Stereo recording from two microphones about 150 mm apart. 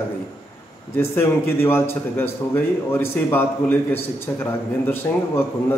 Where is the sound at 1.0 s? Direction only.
15° left (ahead or behind).